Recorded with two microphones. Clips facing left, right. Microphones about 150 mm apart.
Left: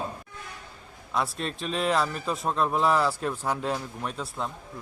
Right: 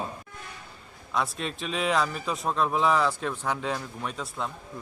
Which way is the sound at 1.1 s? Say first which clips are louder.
Even; centre (ahead or behind).